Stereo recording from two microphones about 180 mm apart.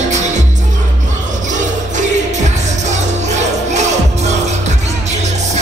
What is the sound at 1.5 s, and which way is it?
Music, 40° right (ahead or behind).